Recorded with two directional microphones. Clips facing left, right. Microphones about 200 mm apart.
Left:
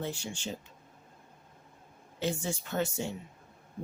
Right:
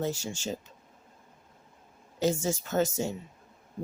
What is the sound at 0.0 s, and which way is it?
Speech, 40° right (ahead or behind).